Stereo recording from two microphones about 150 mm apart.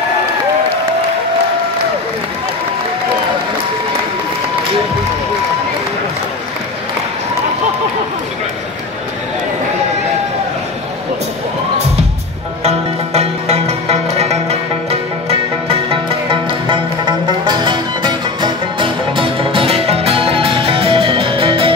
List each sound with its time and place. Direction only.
12.6 s music: 45° right (ahead or behind)
15.9 s music: 35° right (ahead or behind)